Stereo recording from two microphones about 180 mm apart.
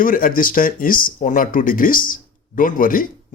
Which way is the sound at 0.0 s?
50° left (ahead or behind).